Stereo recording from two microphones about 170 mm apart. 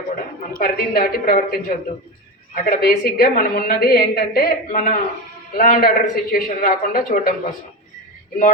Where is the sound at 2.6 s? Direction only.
60° left (ahead or behind).